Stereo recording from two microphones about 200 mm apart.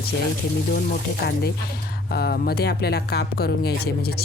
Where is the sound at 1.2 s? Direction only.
55° left (ahead or behind).